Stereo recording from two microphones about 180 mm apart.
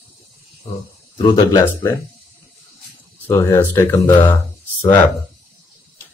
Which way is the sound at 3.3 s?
15° left (ahead or behind).